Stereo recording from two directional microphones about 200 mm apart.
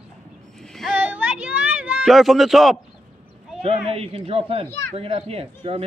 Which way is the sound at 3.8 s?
30° right (ahead or behind).